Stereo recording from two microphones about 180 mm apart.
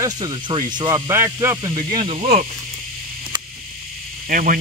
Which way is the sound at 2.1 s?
40° right (ahead or behind).